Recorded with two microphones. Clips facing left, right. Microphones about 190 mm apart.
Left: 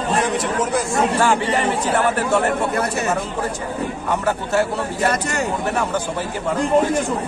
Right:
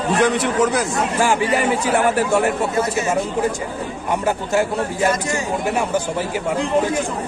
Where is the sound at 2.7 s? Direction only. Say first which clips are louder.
Right 1 dB; 60° left (ahead or behind).